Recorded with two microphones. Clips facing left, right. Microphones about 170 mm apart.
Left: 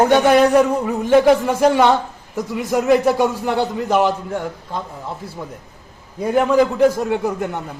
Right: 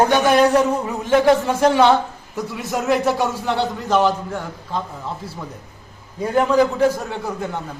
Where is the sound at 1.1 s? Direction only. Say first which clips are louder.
Left 2 dB; 10° left (ahead or behind).